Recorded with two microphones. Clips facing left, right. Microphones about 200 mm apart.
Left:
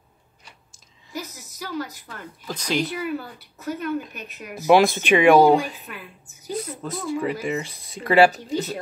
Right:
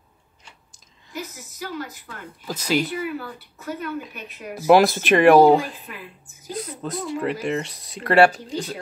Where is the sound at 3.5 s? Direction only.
45° left (ahead or behind).